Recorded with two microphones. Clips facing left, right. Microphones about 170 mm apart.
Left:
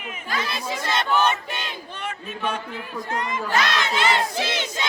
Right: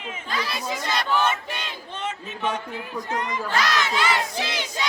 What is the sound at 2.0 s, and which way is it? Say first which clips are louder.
Speech: right 1 dB; 20° right (ahead or behind).